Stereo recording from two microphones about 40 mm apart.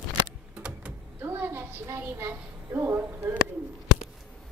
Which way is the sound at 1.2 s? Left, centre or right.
Right.